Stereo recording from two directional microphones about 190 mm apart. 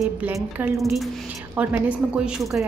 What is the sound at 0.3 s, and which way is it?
A woman's voice, 10° right (ahead or behind).